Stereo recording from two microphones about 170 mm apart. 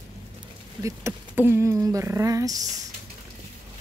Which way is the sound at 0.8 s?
15° right (ahead or behind).